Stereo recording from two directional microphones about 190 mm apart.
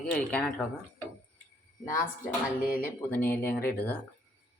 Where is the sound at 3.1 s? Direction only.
10° left (ahead or behind).